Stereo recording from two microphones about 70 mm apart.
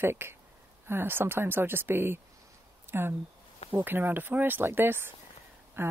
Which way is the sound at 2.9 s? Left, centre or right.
Right.